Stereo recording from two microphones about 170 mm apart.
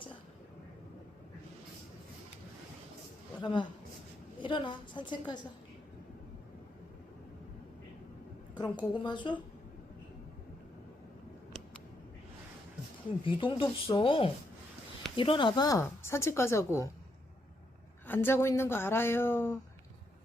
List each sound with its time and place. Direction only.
3.4 s a woman's voice: 25° left (ahead or behind)
8.5 s a woman's voice: 25° left (ahead or behind)
13.2 s a woman's voice: 30° left (ahead or behind)
18.0 s a woman's voice: 10° left (ahead or behind)